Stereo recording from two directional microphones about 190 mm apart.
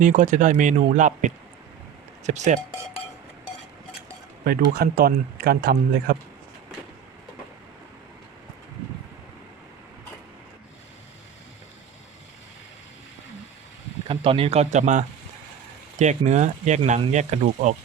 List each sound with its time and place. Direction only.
0.0 s speech: 40° right (ahead or behind)
4.4 s speech: 55° right (ahead or behind)
14.1 s speech: 30° right (ahead or behind)